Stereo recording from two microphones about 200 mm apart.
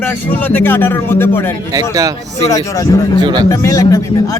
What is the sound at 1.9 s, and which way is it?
Speech, 15° right (ahead or behind).